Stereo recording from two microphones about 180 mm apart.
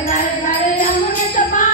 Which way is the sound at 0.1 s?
50° left (ahead or behind).